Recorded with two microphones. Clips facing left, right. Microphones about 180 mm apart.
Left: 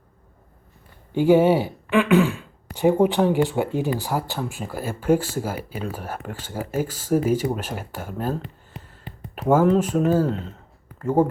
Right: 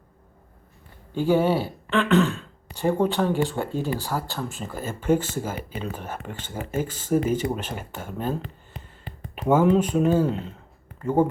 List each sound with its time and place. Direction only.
1.1 s speech: 15° left (ahead or behind)